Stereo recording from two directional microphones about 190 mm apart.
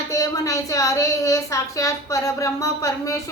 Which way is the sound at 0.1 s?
15° left (ahead or behind).